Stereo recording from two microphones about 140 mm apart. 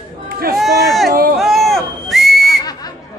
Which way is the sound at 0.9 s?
Centre (ahead or behind).